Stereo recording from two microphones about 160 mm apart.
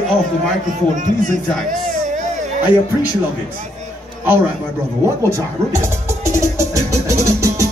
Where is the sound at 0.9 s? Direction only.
50° right (ahead or behind).